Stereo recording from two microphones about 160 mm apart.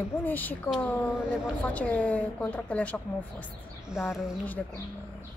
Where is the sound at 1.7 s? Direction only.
10° left (ahead or behind).